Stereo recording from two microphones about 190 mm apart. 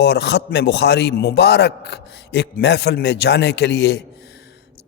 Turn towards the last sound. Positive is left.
turn(degrees=60)  # may be behind; listen again after turning